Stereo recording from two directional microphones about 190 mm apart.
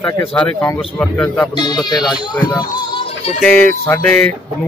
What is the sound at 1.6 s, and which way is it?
Speech, 20° left (ahead or behind).